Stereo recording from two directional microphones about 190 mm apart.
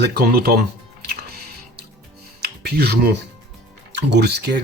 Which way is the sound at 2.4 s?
60° right (ahead or behind).